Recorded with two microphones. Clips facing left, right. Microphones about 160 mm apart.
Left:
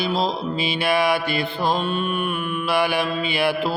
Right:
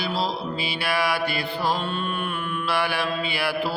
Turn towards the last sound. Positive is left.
turn(degrees=20)  # may be behind; listen again after turning